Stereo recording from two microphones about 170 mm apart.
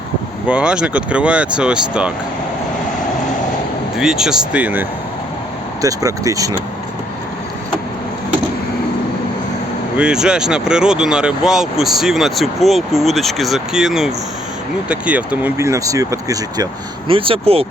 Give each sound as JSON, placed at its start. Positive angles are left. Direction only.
{"t": 0.4, "sound": "speech", "side_deg": -5}
{"t": 3.9, "sound": "speech", "side_deg": -5}
{"t": 5.8, "sound": "speech", "side_deg": -20}
{"t": 10.0, "sound": "speech", "side_deg": -5}
{"t": 17.1, "sound": "speech", "side_deg": -30}